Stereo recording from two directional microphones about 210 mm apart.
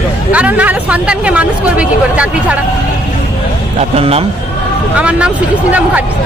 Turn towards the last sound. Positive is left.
turn(degrees=-5)  # may be behind; listen again after turning